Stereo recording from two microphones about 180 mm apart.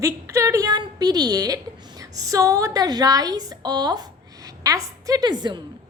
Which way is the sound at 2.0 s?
20° right (ahead or behind).